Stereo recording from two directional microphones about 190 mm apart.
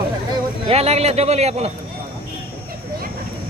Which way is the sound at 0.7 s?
35° right (ahead or behind).